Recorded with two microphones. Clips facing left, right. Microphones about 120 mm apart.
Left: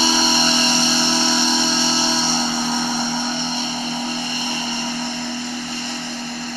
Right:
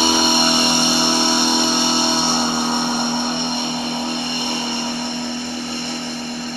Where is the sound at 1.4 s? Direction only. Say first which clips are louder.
Right 2 dB; 55° right (ahead or behind).